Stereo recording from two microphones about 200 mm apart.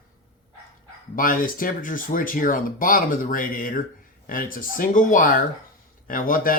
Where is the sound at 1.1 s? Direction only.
45° left (ahead or behind).